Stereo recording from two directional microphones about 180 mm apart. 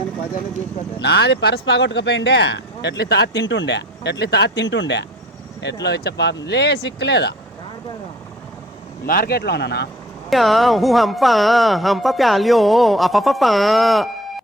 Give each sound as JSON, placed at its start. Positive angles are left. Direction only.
{"t": 1.0, "sound": "speech", "side_deg": 65}
{"t": 5.8, "sound": "speech", "side_deg": 65}
{"t": 9.0, "sound": "speech", "side_deg": 55}
{"t": 10.2, "sound": "speech", "side_deg": 0}